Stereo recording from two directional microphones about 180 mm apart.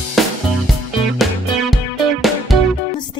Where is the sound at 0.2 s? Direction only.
Centre (ahead or behind).